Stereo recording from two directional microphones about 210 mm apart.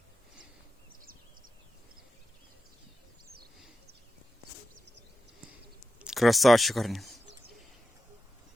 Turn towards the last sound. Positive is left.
turn(degrees=0)  # may be behind; listen again after turning